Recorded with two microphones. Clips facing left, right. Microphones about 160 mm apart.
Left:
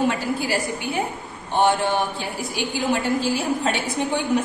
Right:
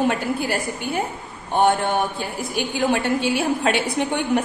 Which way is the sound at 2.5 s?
60° right (ahead or behind).